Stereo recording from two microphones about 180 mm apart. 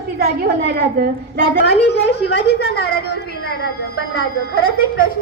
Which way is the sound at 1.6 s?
70° left (ahead or behind).